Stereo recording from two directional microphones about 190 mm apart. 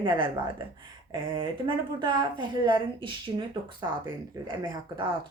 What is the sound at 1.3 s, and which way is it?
A woman's voice, 25° right (ahead or behind).